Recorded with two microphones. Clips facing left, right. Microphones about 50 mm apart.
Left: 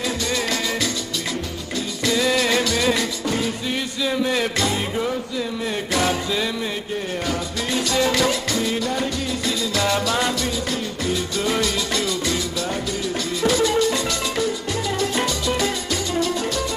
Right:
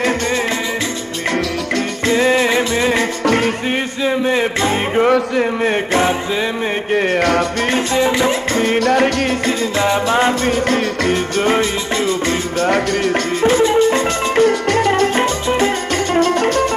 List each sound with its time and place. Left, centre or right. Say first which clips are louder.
2.0 s music: right 5 dB; right
3.3 s music: right 10 dB; right
4.0 s a sound: right 5 dB; right
5.1 s a sound: right 11 dB; right
5.9 s music: right 5 dB; right
6.9 s music: right 14 dB; right
8.0 s music: right 3 dB; right
8.5 s music: right 9 dB; right
9.5 s music: right 6 dB; right
9.8 s music: right 8 dB; right
10.5 s music: right 9 dB; right
12.6 s music: right 10 dB; right
13.4 s music: right 6 dB; right
14.4 s music: right 11 dB; right